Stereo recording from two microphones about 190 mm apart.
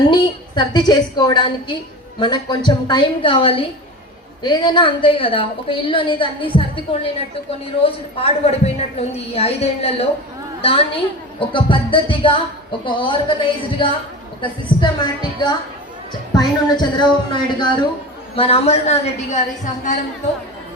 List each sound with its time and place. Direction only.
0.1 s a woman's voice: 25° left (ahead or behind)
7.8 s a woman's voice: 30° left (ahead or behind)